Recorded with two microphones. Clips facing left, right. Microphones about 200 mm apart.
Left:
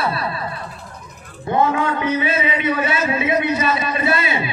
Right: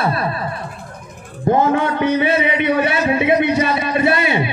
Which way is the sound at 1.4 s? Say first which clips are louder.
Right 3 dB; 55° right (ahead or behind).